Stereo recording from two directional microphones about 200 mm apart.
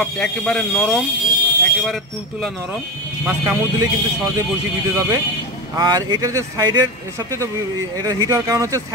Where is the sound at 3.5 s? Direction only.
15° right (ahead or behind).